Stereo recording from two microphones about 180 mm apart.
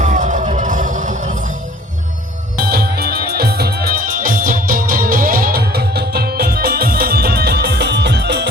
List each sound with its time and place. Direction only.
0.0 s music: 45° right (ahead or behind)
2.6 s music: 60° right (ahead or behind)